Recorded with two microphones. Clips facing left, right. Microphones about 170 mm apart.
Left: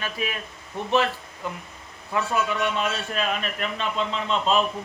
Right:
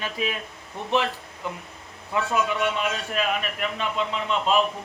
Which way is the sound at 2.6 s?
10° right (ahead or behind).